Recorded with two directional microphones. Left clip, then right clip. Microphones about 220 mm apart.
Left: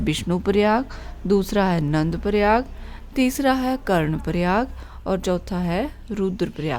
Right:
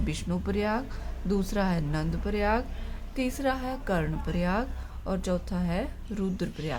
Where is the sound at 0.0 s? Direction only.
40° left (ahead or behind).